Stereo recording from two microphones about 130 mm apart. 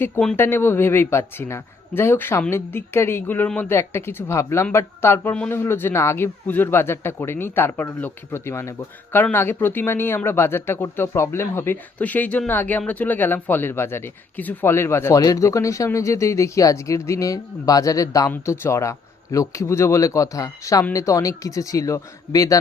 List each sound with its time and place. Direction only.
0.0 s speech: 15° left (ahead or behind)